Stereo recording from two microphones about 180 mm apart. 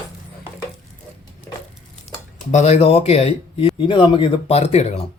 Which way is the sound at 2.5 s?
40° left (ahead or behind).